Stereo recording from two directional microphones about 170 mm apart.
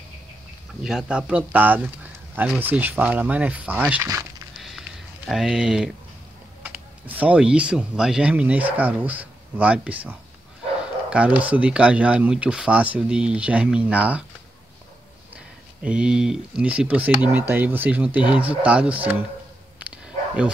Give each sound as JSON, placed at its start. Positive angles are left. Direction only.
{"t": 0.8, "sound": "speech", "side_deg": -5}
{"t": 4.6, "sound": "a sound", "side_deg": 0}
{"t": 6.6, "sound": "speech", "side_deg": -10}
{"t": 15.8, "sound": "speech", "side_deg": -5}
{"t": 19.8, "sound": "bow-wow", "side_deg": -10}